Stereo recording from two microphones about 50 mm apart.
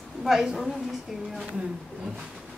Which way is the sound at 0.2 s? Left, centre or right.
Centre.